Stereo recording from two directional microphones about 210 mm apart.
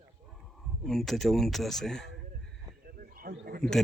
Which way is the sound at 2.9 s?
45° right (ahead or behind).